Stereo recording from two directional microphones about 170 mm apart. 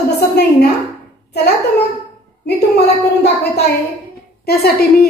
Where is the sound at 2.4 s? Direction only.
75° left (ahead or behind).